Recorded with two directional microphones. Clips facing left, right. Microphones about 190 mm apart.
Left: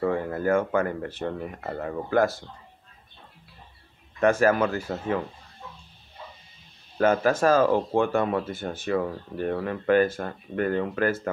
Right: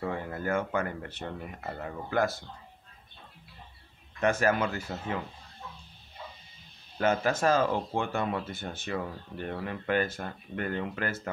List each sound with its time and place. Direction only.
0.1 s speech: 40° left (ahead or behind)
4.2 s speech: 40° left (ahead or behind)
7.0 s speech: 40° left (ahead or behind)